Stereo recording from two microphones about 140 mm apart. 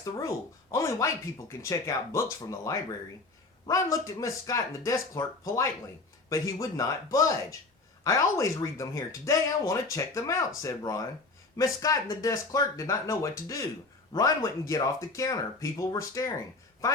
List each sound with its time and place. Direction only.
0.0 s speech: 25° left (ahead or behind)